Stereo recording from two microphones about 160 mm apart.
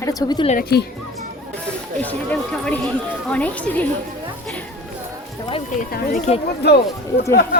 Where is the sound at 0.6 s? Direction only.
85° left.